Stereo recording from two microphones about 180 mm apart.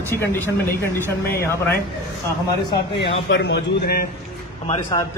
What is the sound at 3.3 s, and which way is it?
Speech, 65° left (ahead or behind).